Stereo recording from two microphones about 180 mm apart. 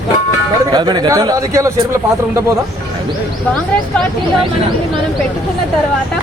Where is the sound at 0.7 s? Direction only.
25° right (ahead or behind).